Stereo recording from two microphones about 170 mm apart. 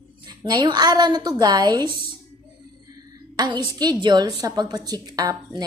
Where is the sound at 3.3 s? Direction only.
25° right (ahead or behind).